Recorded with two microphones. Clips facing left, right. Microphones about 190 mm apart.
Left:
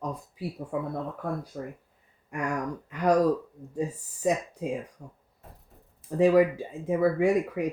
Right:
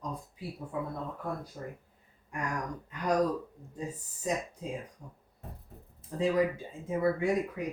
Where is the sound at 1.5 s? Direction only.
85° left.